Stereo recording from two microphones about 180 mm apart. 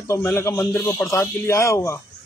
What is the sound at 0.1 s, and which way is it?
Speech, 15° left (ahead or behind).